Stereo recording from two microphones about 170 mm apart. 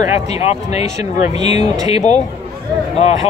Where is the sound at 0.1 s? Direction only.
40° left (ahead or behind).